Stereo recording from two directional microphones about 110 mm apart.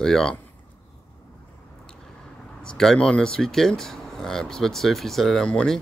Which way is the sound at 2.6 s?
5° left (ahead or behind).